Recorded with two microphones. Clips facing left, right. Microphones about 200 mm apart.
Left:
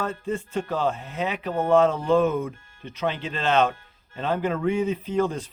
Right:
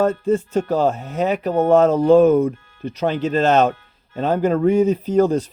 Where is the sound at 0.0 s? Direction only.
40° right (ahead or behind).